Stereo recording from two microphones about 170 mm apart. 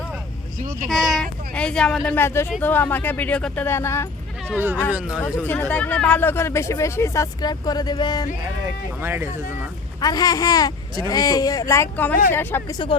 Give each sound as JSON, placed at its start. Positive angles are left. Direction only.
{"t": 1.1, "sound": "speech", "side_deg": 5}
{"t": 2.1, "sound": "speech", "side_deg": 15}
{"t": 4.5, "sound": "speech", "side_deg": -10}
{"t": 5.5, "sound": "speech", "side_deg": 10}
{"t": 8.6, "sound": "speech", "side_deg": -15}
{"t": 10.0, "sound": "speech", "side_deg": 25}